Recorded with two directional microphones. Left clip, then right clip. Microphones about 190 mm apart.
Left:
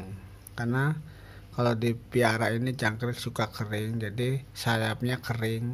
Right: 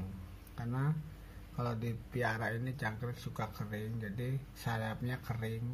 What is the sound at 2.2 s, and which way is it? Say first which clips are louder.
Speech: left 10 dB; 35° left (ahead or behind).